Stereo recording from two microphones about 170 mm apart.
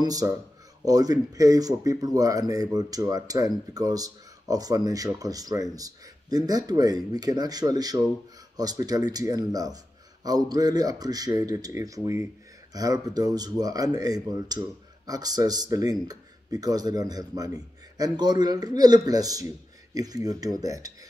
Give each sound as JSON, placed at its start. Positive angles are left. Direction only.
{"t": 0.0, "sound": "speech", "side_deg": -20}